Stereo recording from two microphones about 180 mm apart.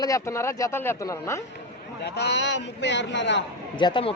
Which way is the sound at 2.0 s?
65° left (ahead or behind).